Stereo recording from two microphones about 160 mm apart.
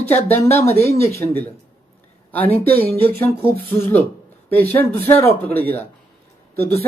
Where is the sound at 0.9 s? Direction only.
15° left (ahead or behind).